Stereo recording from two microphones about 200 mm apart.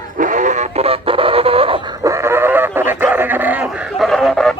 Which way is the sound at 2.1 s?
15° right (ahead or behind).